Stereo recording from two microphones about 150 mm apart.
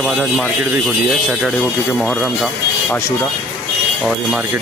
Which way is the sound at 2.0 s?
5° left (ahead or behind).